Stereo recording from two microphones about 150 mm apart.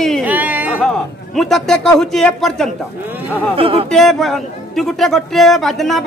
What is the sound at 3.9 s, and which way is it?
A man's voice, centre (ahead or behind).